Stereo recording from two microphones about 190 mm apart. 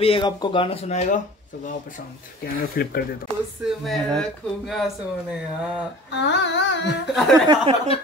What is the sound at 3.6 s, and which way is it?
Speech, centre (ahead or behind).